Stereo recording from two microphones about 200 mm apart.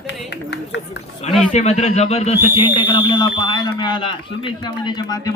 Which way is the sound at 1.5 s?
35° left (ahead or behind).